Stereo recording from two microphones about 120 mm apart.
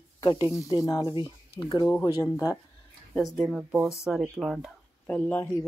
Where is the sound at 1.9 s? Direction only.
20° left (ahead or behind).